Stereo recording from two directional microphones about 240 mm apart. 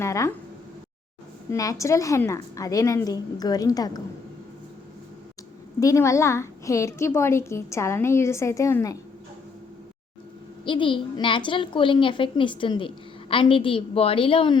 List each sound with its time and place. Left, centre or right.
0.0 s a sound: centre
1.5 s a woman's voice: centre
5.8 s a woman's voice: centre
10.7 s a woman's voice: left